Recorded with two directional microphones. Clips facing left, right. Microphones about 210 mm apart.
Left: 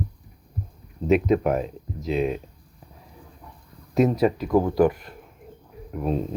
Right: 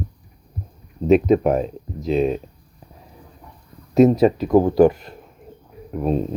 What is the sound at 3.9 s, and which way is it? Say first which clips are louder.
Speech: right 6 dB; 25° right (ahead or behind).